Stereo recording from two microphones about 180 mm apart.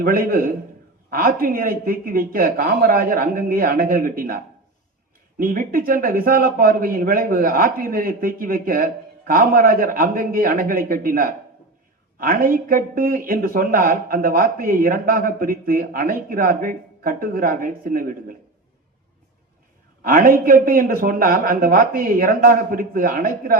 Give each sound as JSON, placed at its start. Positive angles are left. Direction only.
{"t": 0.0, "sound": "speech", "side_deg": -55}
{"t": 20.0, "sound": "speech", "side_deg": -50}